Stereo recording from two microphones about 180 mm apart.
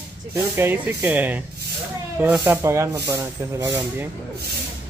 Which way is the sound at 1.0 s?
10° right (ahead or behind).